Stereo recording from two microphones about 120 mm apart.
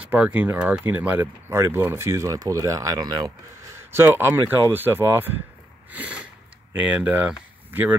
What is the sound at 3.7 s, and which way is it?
Speech, 20° right (ahead or behind).